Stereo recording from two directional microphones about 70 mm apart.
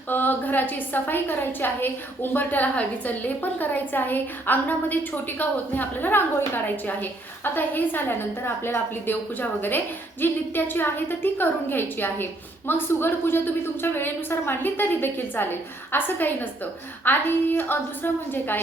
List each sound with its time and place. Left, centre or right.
0.1 s a woman's voice: left